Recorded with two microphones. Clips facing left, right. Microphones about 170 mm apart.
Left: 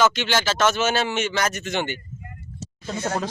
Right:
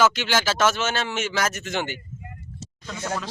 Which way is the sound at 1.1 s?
5° right (ahead or behind).